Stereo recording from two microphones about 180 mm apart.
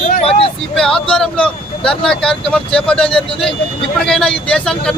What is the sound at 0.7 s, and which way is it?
A man's voice, 5° left (ahead or behind).